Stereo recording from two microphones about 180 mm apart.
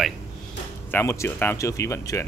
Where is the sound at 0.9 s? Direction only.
15° left (ahead or behind).